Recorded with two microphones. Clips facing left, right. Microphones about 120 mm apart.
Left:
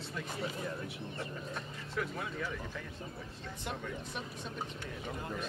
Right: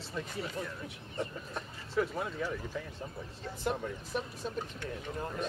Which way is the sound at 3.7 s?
Centre (ahead or behind).